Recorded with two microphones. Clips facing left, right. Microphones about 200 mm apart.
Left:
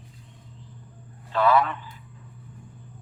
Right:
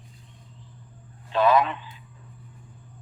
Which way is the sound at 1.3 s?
20° right (ahead or behind).